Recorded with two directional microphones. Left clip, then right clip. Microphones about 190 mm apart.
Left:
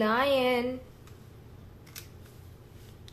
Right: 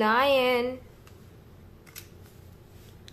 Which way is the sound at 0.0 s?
25° right (ahead or behind).